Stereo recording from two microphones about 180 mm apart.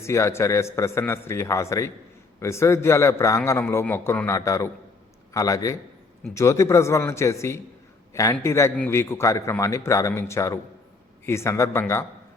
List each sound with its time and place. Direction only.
0.0 s a man's voice: 15° left (ahead or behind)